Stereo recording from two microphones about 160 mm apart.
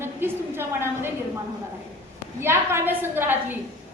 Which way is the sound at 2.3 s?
15° right (ahead or behind).